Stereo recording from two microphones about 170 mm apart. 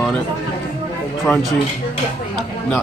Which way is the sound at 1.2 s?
Centre (ahead or behind).